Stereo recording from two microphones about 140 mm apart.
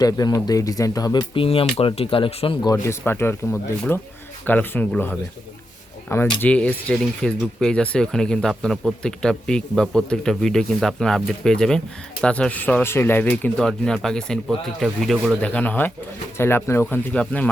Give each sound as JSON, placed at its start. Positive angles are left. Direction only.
{"t": 0.0, "sound": "speech", "side_deg": 25}
{"t": 2.6, "sound": "speech", "side_deg": 25}
{"t": 6.4, "sound": "speech", "side_deg": 10}
{"t": 15.4, "sound": "speech", "side_deg": 10}